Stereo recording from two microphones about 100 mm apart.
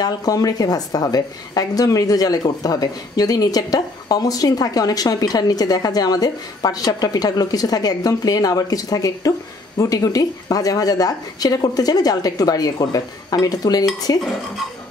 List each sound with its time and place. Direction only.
0.0 s a woman's voice: 35° left (ahead or behind)